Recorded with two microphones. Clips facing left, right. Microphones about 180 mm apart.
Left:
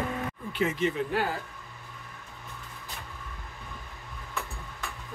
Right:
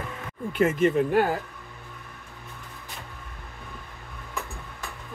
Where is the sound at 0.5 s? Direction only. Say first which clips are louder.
Right 7 dB; 50° right (ahead or behind).